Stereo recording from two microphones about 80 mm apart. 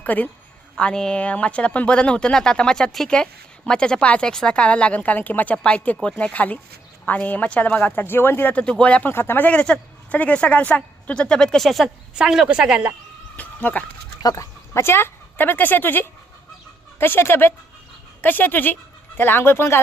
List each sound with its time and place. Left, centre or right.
0.0 s a woman's voice: centre
8.6 s a woman's voice: centre
13.3 s speech: left
14.2 s speech: left
14.7 s speech: left